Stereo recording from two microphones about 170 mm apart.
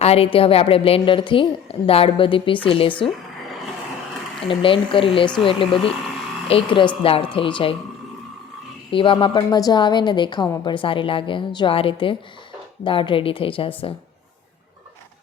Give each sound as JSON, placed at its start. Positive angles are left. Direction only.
{"t": 0.0, "sound": "a woman's voice", "side_deg": 35}
{"t": 4.4, "sound": "a woman's voice", "side_deg": 30}
{"t": 8.9, "sound": "a woman's voice", "side_deg": 30}